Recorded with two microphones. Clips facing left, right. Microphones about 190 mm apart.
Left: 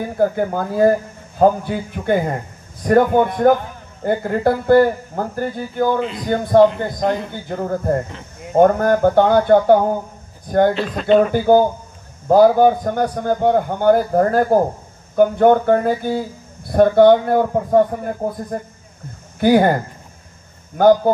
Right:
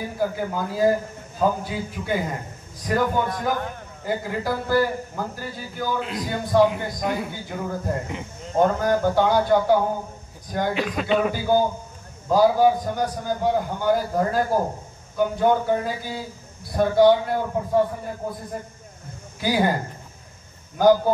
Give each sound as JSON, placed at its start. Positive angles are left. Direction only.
{"t": 0.2, "sound": "a man's voice", "side_deg": 55}
{"t": 5.9, "sound": "a man's voice", "side_deg": -5}
{"t": 6.2, "sound": "speech", "side_deg": 55}
{"t": 6.6, "sound": "speech", "side_deg": -5}
{"t": 7.4, "sound": "a man's voice", "side_deg": 55}
{"t": 10.7, "sound": "speech", "side_deg": -10}
{"t": 11.3, "sound": "a man's voice", "side_deg": 55}
{"t": 19.4, "sound": "a man's voice", "side_deg": 60}